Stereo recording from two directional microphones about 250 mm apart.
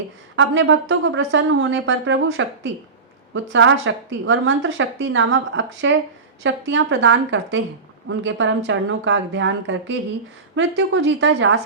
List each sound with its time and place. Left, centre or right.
0.3 s a woman's voice: right